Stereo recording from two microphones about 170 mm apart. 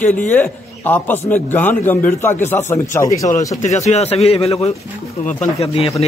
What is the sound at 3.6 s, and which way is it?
Speech, 40° left (ahead or behind).